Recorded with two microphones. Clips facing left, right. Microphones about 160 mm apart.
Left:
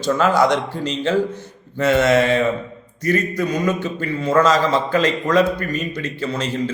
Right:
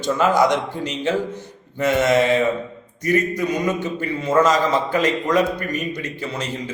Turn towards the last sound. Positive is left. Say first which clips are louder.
# left 5 dB
turn(degrees=-15)  # may be behind; listen again after turning